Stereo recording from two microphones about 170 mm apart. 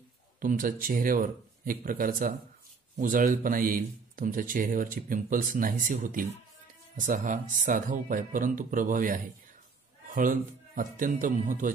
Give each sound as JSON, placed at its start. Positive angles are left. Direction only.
{"t": 0.4, "sound": "speech", "side_deg": -55}